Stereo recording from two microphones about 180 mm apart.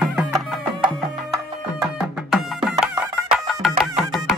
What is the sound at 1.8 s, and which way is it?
Music, 5° right (ahead or behind).